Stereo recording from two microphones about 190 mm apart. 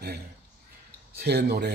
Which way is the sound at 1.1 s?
60° right (ahead or behind).